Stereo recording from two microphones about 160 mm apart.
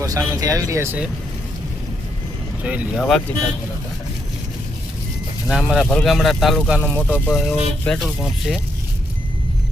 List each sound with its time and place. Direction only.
0.0 s speech: 20° right (ahead or behind)
2.6 s speech: 5° right (ahead or behind)
5.5 s speech: 5° right (ahead or behind)